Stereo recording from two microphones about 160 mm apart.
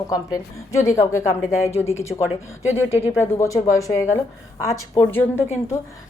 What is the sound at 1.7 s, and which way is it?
Speech, 40° left (ahead or behind).